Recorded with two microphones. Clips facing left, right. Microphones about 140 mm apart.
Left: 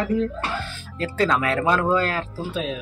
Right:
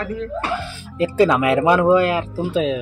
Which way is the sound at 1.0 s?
15° right (ahead or behind).